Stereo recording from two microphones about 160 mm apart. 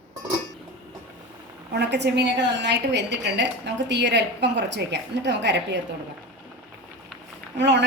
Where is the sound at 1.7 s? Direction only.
90° right.